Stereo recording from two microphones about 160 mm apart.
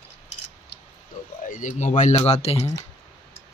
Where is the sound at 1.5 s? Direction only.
55° left (ahead or behind).